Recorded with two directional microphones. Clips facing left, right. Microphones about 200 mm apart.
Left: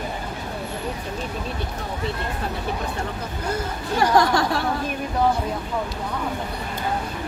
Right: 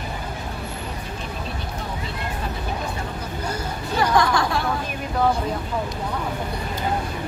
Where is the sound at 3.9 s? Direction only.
40° left (ahead or behind).